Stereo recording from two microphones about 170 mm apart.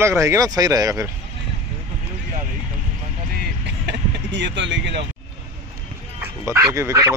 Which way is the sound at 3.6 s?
90° right.